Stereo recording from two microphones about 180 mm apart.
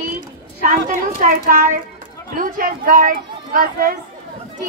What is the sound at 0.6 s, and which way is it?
Speech, 50° right (ahead or behind).